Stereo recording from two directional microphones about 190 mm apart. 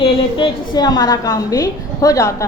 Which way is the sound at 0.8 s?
20° left (ahead or behind).